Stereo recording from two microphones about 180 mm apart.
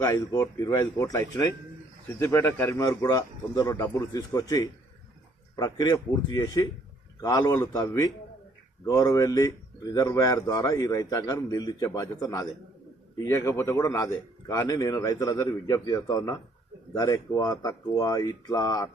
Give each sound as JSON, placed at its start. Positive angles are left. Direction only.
{"t": 0.0, "sound": "a man's voice", "side_deg": 20}